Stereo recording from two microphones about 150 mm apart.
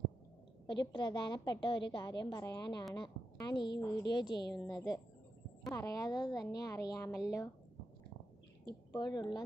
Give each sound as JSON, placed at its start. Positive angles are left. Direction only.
{"t": 0.7, "sound": "a woman's voice", "side_deg": 30}
{"t": 8.9, "sound": "a woman's voice", "side_deg": 25}